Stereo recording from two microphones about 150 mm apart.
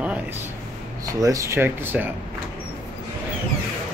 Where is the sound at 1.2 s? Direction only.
20° right (ahead or behind).